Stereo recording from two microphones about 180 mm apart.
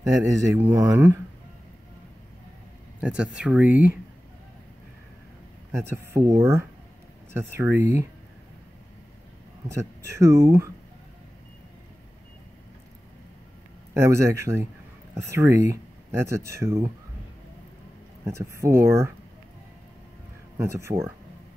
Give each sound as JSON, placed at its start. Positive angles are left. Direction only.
{"t": 0.0, "sound": "speech", "side_deg": -15}
{"t": 3.0, "sound": "speech", "side_deg": -5}
{"t": 5.7, "sound": "speech", "side_deg": -15}
{"t": 9.7, "sound": "speech", "side_deg": -15}
{"t": 13.9, "sound": "speech", "side_deg": -15}
{"t": 18.2, "sound": "speech", "side_deg": -15}
{"t": 20.5, "sound": "speech", "side_deg": -15}